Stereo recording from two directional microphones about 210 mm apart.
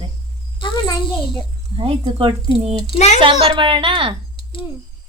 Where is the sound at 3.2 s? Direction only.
25° right (ahead or behind).